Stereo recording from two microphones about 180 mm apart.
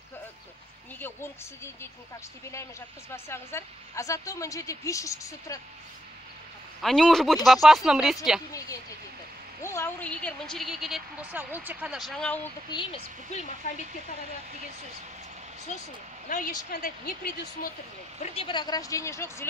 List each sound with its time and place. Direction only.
0.9 s a woman's voice: 15° left (ahead or behind)
3.1 s a woman's voice: 15° left (ahead or behind)
6.8 s a woman's voice: 5° left (ahead or behind)
9.6 s a woman's voice: 15° left (ahead or behind)
12.7 s speech: 35° left (ahead or behind)
16.3 s a woman's voice: 50° left (ahead or behind)
18.2 s speech: 30° left (ahead or behind); by 19.4 s 15° left (ahead or behind)